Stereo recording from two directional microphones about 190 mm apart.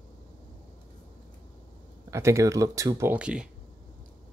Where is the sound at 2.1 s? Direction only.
15° right (ahead or behind).